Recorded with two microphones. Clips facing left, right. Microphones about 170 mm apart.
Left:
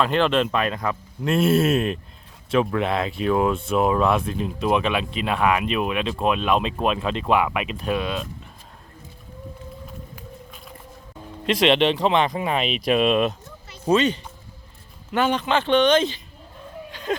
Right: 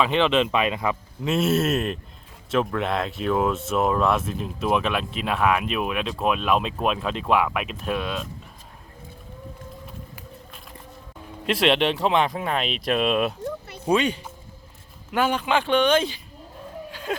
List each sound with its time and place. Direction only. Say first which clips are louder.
0.0 s speech: even; centre (ahead or behind)
9.8 s run: left 2 dB; 5° right (ahead or behind)
11.4 s speech: left 2 dB; 5° right (ahead or behind)
13.4 s a sound: right 12 dB; 60° right (ahead or behind)
13.8 s speech: left 2 dB; 10° right (ahead or behind)
16.9 s a sound: left 3 dB; 5° right (ahead or behind)